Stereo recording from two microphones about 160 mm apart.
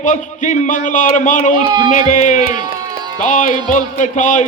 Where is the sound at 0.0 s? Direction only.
50° left (ahead or behind).